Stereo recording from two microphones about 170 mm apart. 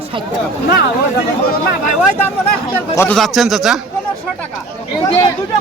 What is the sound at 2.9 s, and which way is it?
Speech, 5° left (ahead or behind).